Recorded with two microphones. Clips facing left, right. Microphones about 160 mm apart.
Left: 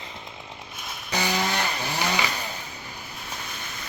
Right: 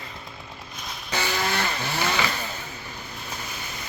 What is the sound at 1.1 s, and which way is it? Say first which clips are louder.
Chainsaw: left 1 dB; 15° left (ahead or behind).